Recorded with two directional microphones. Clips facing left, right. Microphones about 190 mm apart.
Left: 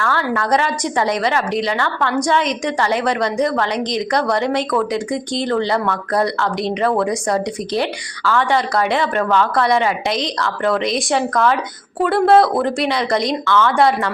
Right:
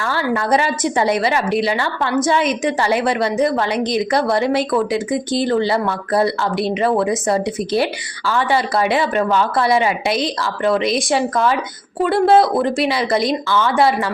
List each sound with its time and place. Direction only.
0.0 s a woman's voice: 10° right (ahead or behind)